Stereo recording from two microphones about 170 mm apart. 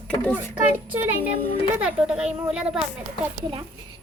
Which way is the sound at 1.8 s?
5° right (ahead or behind).